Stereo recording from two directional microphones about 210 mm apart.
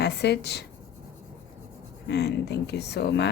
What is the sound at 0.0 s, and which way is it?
Speech, 50° left (ahead or behind).